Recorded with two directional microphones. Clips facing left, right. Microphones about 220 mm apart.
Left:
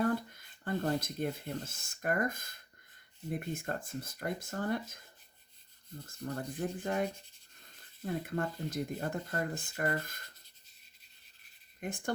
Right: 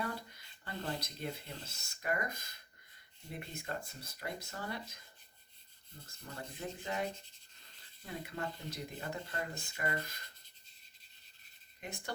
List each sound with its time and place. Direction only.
0.0 s speech: 50° left (ahead or behind)
6.1 s speech: 50° left (ahead or behind)
11.8 s speech: 50° left (ahead or behind)